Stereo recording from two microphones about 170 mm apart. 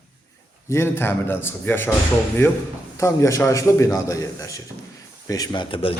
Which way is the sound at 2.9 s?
15° left (ahead or behind).